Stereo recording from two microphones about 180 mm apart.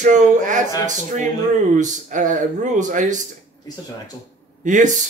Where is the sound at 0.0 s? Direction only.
45° right (ahead or behind).